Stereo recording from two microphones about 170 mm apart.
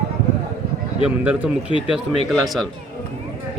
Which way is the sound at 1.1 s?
10° right (ahead or behind).